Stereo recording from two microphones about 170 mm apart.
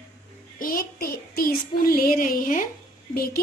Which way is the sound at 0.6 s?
60° left (ahead or behind).